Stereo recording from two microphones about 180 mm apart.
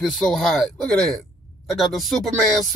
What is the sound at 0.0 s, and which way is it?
Speech, centre (ahead or behind).